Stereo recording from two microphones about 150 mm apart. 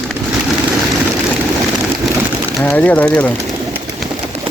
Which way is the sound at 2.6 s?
10° left (ahead or behind).